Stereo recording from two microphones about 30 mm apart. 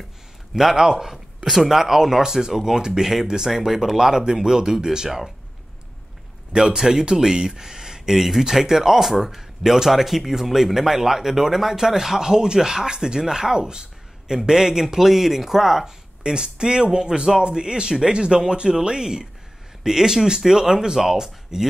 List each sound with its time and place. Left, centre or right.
0.5 s speech: centre
4.2 s speech: right
6.5 s speech: right
16.3 s speech: right